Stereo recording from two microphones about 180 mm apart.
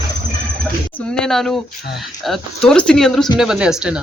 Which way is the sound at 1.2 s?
5° left (ahead or behind).